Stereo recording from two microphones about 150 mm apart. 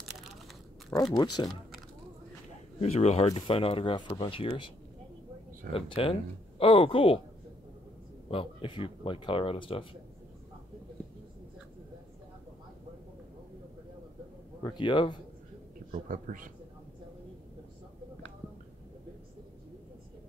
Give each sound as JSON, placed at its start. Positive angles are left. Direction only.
{"t": 0.0, "sound": "a sound", "side_deg": 0}
{"t": 1.1, "sound": "speech", "side_deg": 25}
{"t": 2.8, "sound": "speech", "side_deg": 45}
{"t": 5.7, "sound": "speech", "side_deg": 35}
{"t": 8.3, "sound": "speech", "side_deg": 35}
{"t": 14.6, "sound": "speech", "side_deg": 30}
{"t": 15.9, "sound": "a man's voice", "side_deg": -60}